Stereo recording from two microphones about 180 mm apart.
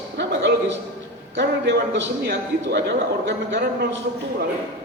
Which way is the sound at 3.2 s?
80° right.